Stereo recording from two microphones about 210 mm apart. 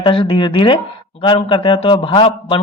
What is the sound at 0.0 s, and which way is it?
Speech, 25° left (ahead or behind).